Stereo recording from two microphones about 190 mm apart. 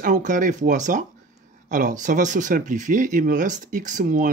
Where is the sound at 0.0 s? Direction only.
40° right (ahead or behind).